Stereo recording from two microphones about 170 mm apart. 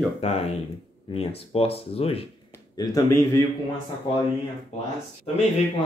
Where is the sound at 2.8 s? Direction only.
20° left (ahead or behind).